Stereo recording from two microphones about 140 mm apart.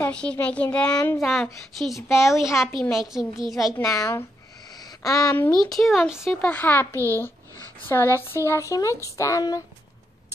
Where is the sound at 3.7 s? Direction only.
20° left (ahead or behind).